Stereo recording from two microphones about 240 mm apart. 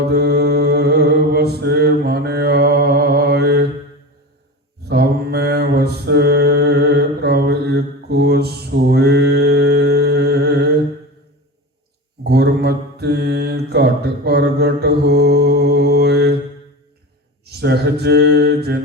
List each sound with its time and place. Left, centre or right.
0.0 s mantra: right
4.8 s mantra: right
12.2 s mantra: right
17.4 s mantra: right